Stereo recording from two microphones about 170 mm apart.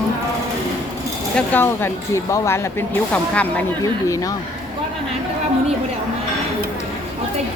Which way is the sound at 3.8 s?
20° left (ahead or behind).